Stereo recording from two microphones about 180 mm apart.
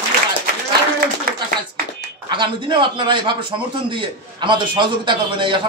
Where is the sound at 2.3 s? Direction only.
25° right (ahead or behind).